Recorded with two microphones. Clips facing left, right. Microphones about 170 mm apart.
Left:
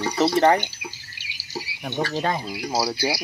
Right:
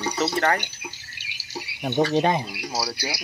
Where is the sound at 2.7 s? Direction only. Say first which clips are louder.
Left 7 dB; 25° left (ahead or behind).